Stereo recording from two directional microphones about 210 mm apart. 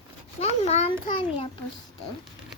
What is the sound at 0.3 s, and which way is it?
A child's voice, 30° left (ahead or behind).